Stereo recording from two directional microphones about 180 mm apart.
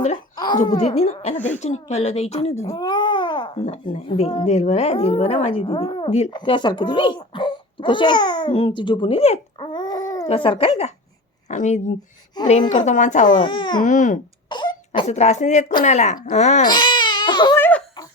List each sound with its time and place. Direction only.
0.3 s speech: 25° left (ahead or behind)
0.8 s speech: 35° left (ahead or behind)
2.7 s speech: 25° left (ahead or behind)
6.3 s a child's voice: 25° left (ahead or behind); by 13.2 s 45° left (ahead or behind)
13.4 s a sound: 25° left (ahead or behind)
13.7 s speech: 45° left (ahead or behind)
14.5 s cough: 25° left (ahead or behind)
15.0 s speech: 40° left (ahead or behind)
16.6 s crying: 25° left (ahead or behind)
17.6 s giggle: 10° left (ahead or behind)